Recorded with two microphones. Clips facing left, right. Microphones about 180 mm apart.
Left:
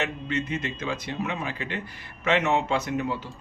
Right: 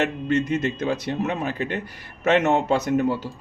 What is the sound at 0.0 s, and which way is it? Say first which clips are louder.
A man's voice: right 7 dB; 45° right (ahead or behind).